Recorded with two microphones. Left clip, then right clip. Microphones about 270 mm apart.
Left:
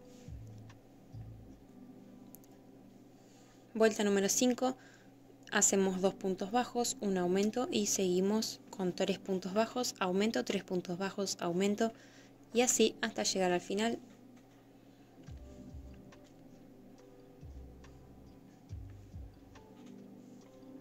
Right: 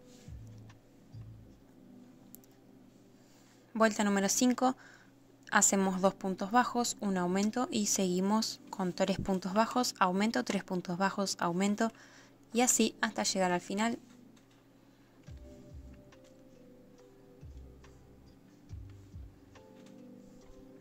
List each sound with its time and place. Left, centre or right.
3.7 s speech: right